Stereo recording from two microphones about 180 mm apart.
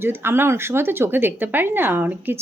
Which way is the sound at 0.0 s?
10° right (ahead or behind).